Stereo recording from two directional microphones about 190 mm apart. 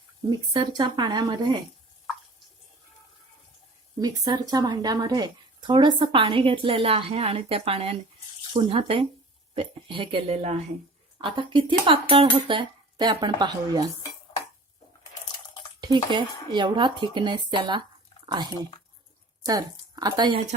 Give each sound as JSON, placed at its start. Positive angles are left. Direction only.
{"t": 0.3, "sound": "a woman's voice", "side_deg": -20}
{"t": 4.3, "sound": "a woman's voice", "side_deg": -20}
{"t": 16.5, "sound": "a woman's voice", "side_deg": -25}